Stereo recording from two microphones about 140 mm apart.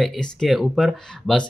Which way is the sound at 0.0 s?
Centre (ahead or behind).